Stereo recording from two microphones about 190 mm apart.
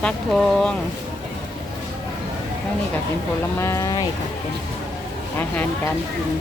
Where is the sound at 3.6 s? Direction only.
15° left (ahead or behind).